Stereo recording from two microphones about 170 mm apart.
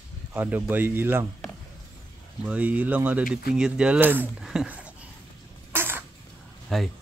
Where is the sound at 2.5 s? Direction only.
10° right (ahead or behind).